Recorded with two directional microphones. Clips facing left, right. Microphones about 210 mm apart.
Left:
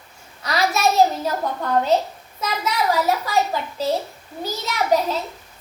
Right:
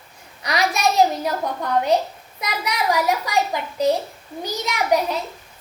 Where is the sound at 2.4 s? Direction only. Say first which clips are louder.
Left 2 dB; 15° right (ahead or behind).